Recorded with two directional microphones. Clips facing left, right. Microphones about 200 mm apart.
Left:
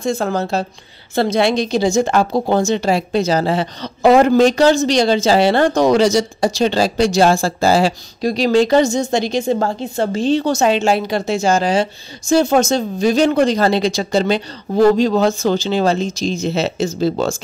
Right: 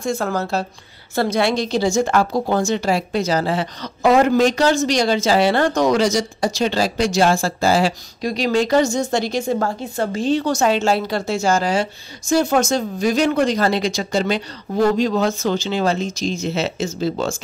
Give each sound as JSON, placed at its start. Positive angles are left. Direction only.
{"t": 0.0, "sound": "a woman's voice", "side_deg": 25}